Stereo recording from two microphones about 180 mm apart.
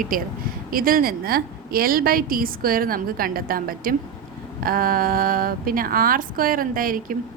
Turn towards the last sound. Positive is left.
turn(degrees=-50)  # may be behind; listen again after turning